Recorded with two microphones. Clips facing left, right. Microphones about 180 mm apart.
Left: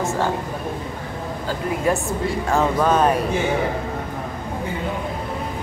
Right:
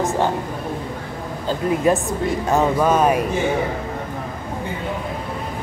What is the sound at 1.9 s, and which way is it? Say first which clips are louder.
Speech: right 1 dB; 20° right (ahead or behind).